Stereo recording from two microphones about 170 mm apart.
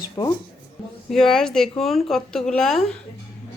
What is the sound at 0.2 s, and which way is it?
Speech, 30° left (ahead or behind).